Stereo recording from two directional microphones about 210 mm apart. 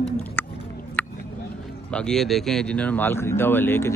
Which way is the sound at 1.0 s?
10° left (ahead or behind).